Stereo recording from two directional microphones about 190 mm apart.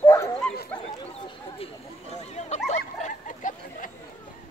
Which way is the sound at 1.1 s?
30° left (ahead or behind).